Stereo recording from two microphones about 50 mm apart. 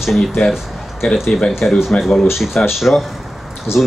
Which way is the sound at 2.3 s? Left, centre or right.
Centre.